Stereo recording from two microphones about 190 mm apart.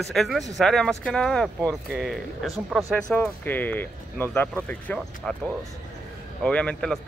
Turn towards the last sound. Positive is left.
turn(degrees=5)  # may be behind; listen again after turning